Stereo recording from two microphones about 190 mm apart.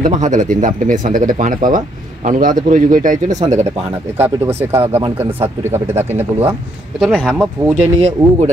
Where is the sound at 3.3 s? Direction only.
15° right (ahead or behind).